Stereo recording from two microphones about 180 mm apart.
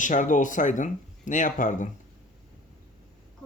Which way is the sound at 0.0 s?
45° left (ahead or behind).